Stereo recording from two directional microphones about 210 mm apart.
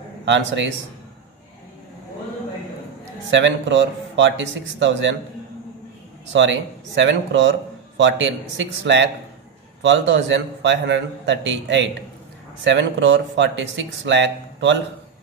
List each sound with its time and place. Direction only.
0.2 s speech: 60° right (ahead or behind)
3.3 s speech: 60° right (ahead or behind)
6.3 s speech: 60° right (ahead or behind)